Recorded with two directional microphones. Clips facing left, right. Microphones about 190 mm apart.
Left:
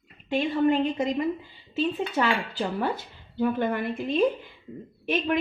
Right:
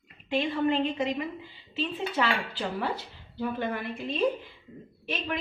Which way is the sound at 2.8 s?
50° left (ahead or behind).